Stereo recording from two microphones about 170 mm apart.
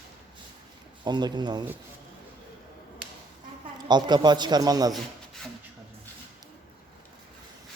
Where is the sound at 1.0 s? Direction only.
25° right (ahead or behind).